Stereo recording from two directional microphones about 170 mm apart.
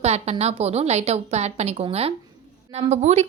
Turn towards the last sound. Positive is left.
turn(degrees=-40)  # may be behind; listen again after turning